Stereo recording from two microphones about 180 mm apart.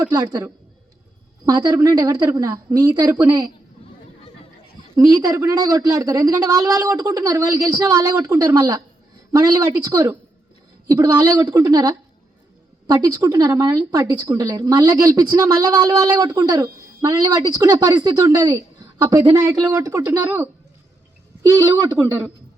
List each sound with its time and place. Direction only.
0.1 s a woman's voice: 20° right (ahead or behind)
1.5 s a woman's voice: 20° right (ahead or behind)
4.9 s a woman's voice: 20° right (ahead or behind)